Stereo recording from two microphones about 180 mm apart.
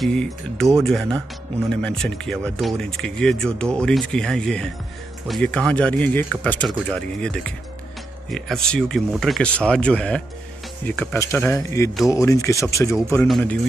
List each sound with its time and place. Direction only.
0.0 s speech: 5° left (ahead or behind)